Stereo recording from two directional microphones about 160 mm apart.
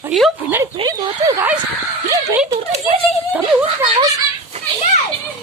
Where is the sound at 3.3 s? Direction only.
15° right (ahead or behind).